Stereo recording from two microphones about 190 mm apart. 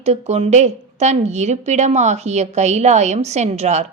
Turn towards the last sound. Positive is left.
turn(degrees=-35)  # may be behind; listen again after turning